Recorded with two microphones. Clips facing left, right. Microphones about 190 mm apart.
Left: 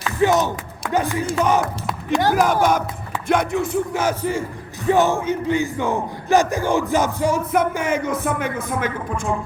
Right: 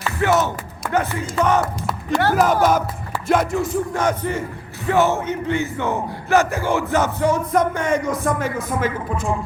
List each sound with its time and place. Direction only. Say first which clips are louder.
0.2 s music: left 1 dB; 15° left (ahead or behind)
2.4 s music: right 1 dB; 5° right (ahead or behind)